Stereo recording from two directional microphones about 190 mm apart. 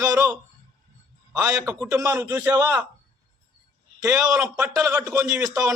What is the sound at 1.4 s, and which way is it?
A man's voice, 10° right (ahead or behind).